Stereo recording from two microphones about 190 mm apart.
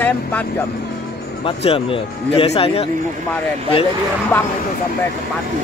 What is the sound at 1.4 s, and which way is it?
Speech, 30° left (ahead or behind).